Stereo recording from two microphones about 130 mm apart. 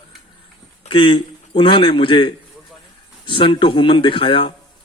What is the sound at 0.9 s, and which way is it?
Speech, 40° left (ahead or behind).